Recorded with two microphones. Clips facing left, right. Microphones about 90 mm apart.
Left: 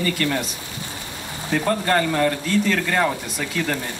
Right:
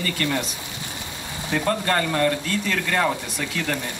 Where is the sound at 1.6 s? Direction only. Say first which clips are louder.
Left 2 dB; 15° left (ahead or behind).